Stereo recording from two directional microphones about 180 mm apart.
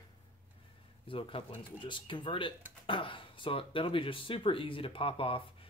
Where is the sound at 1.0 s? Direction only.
30° left (ahead or behind).